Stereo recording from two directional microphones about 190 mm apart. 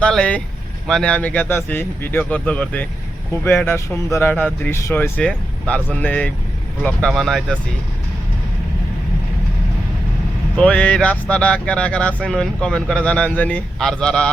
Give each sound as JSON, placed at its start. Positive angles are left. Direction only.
{"t": 0.0, "sound": "speech", "side_deg": 5}
{"t": 10.6, "sound": "speech", "side_deg": 5}